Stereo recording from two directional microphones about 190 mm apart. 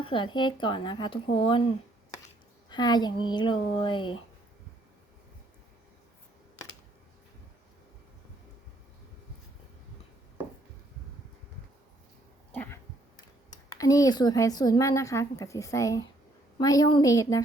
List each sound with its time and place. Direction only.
0.0 s speech: 25° left (ahead or behind)
2.6 s speech: 20° left (ahead or behind)
12.5 s a sound: 10° left (ahead or behind)
13.7 s speech: 20° left (ahead or behind)